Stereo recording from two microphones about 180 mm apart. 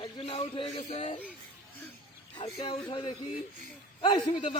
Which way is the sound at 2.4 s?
25° left (ahead or behind).